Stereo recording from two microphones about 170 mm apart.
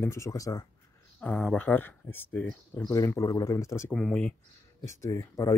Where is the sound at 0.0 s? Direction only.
15° left (ahead or behind).